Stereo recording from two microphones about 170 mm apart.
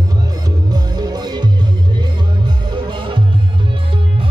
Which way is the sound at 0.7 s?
25° right (ahead or behind).